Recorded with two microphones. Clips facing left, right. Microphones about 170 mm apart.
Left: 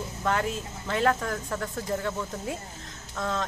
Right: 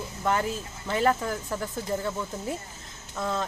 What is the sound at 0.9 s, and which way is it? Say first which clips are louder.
Speech: right 1 dB; 5° right (ahead or behind).